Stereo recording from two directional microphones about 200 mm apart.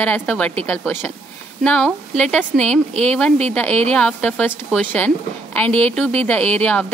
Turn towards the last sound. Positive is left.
turn(degrees=5)  # may be behind; listen again after turning